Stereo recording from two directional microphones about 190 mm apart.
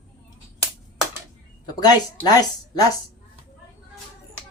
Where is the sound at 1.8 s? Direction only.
20° left (ahead or behind).